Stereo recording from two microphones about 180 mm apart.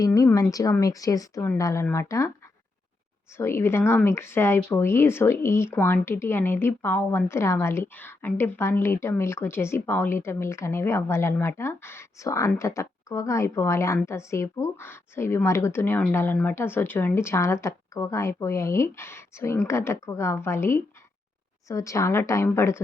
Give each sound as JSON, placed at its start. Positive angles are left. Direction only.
{"t": 0.0, "sound": "speech", "side_deg": 20}
{"t": 3.3, "sound": "speech", "side_deg": 15}